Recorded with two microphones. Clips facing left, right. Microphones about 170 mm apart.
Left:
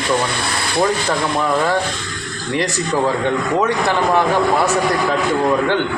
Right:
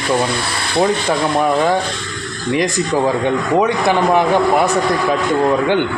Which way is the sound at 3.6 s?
15° right (ahead or behind).